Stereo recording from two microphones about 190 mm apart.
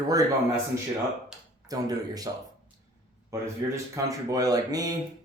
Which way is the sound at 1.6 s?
20° right (ahead or behind).